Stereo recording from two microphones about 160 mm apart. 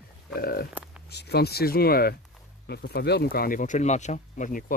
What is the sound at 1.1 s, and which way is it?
Speech, 90° left.